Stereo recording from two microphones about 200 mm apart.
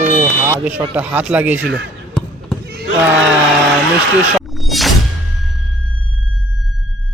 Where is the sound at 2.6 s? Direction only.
55° right (ahead or behind).